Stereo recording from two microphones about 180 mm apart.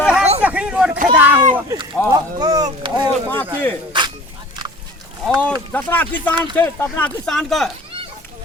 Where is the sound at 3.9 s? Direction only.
25° right (ahead or behind).